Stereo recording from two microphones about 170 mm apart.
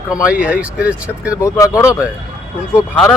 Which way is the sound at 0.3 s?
5° right (ahead or behind).